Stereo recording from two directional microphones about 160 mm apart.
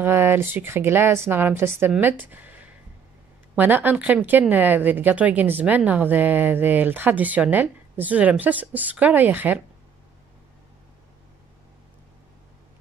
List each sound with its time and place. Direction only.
0.0 s speech: 15° right (ahead or behind)
3.5 s speech: 10° right (ahead or behind)